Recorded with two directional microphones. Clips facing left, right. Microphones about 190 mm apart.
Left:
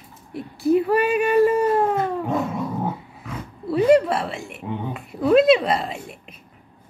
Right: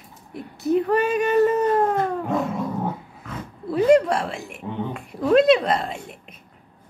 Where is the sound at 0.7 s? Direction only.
10° left (ahead or behind).